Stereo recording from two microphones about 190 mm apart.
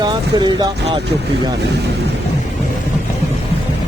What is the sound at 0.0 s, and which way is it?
Speech, 25° right (ahead or behind).